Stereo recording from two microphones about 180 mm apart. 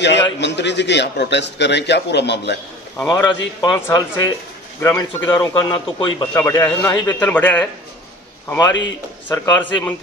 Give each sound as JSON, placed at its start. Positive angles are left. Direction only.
{"t": 0.0, "sound": "a man's voice", "side_deg": 75}
{"t": 3.1, "sound": "a man's voice", "side_deg": 20}
{"t": 6.3, "sound": "a man's voice", "side_deg": 15}
{"t": 8.5, "sound": "a man's voice", "side_deg": 20}